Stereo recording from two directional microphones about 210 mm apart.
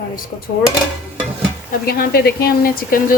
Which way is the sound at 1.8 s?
45° left (ahead or behind).